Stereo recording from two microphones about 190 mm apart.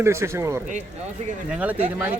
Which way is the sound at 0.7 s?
40° right (ahead or behind).